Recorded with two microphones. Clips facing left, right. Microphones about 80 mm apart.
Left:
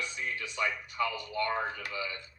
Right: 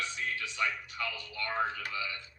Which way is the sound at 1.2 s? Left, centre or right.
Left.